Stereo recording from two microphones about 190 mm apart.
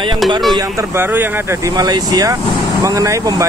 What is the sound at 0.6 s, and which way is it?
Speech, 15° right (ahead or behind).